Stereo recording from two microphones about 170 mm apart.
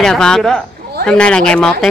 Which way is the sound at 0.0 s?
5° left (ahead or behind).